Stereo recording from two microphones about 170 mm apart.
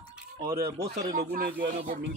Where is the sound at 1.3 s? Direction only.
60° right (ahead or behind).